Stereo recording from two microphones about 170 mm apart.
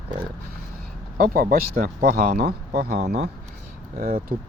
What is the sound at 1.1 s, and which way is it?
Speech, 60° right (ahead or behind).